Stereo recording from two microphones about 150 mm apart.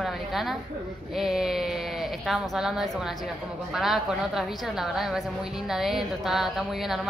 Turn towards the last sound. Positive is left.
turn(degrees=0)  # may be behind; listen again after turning